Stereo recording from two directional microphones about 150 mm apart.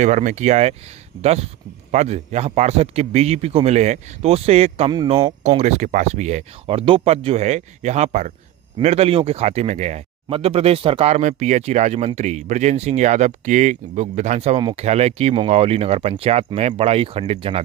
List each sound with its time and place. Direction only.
0.0 s speech: 55° right (ahead or behind); by 17.6 s 40° right (ahead or behind)